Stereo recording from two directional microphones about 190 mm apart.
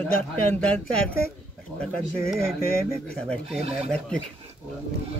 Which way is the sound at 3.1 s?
5° left (ahead or behind).